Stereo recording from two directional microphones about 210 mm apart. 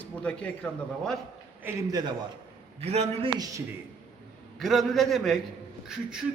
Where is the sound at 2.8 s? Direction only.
30° right (ahead or behind).